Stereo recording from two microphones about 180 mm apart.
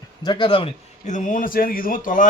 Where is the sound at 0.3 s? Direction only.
25° left (ahead or behind).